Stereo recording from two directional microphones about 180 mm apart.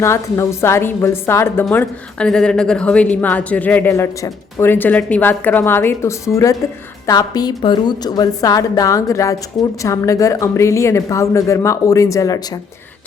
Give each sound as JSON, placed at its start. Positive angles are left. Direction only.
{"t": 0.0, "sound": "a woman's voice", "side_deg": 15}